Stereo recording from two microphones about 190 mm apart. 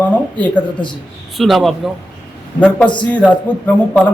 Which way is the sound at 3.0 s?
5° left (ahead or behind).